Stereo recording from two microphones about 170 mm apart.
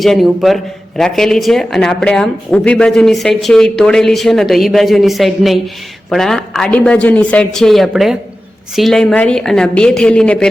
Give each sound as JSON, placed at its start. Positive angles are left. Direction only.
{"t": 0.0, "sound": "speech", "side_deg": 0}